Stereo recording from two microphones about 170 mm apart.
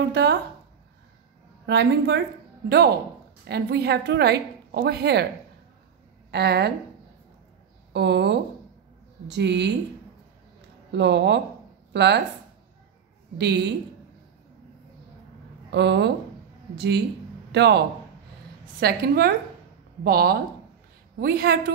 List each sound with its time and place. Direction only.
0.1 s a woman's voice: 80° right
1.7 s a woman's voice: 85° right
3.4 s a woman's voice: 70° right (ahead or behind)
6.3 s a woman's voice: 70° right (ahead or behind)
7.9 s a woman's voice: 80° right
10.9 s speech: 90° right
13.4 s a woman's voice: 80° right
15.7 s a woman's voice: 85° right
18.8 s a woman's voice: 65° right (ahead or behind)